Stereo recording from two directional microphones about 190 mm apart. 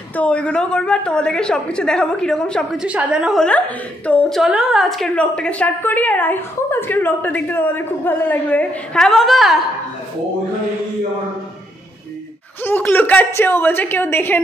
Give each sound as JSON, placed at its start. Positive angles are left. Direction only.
{"t": 0.1, "sound": "a woman's voice", "side_deg": 5}
{"t": 12.6, "sound": "a woman's voice", "side_deg": 10}